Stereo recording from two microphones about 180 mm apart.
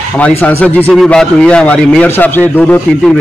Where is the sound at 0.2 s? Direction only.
10° left (ahead or behind).